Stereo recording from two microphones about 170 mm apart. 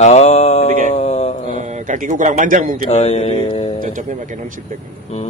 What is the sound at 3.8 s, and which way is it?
Speech, 50° right (ahead or behind).